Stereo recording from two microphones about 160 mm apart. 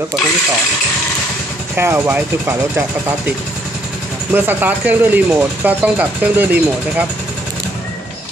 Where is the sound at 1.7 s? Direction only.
15° right (ahead or behind).